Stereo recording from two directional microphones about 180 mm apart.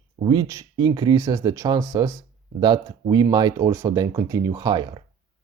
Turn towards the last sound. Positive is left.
turn(degrees=-25)  # may be behind; listen again after turning